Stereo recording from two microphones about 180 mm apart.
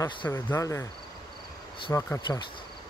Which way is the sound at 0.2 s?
15° left (ahead or behind).